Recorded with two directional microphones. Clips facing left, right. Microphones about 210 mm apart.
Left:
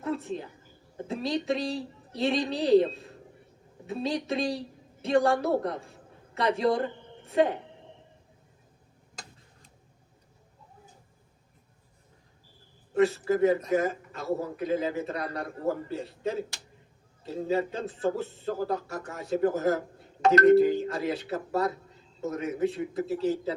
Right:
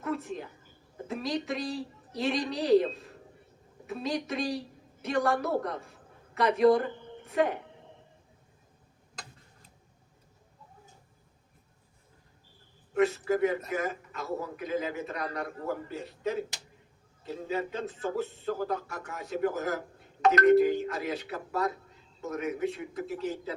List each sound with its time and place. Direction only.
0.0 s a sound: 30° left (ahead or behind)
1.0 s a woman's voice: 30° left (ahead or behind)
3.8 s a woman's voice: 30° left (ahead or behind)
12.9 s speech: 35° left (ahead or behind)